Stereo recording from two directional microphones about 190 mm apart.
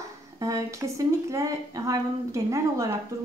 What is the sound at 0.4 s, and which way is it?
A woman's voice, 15° right (ahead or behind).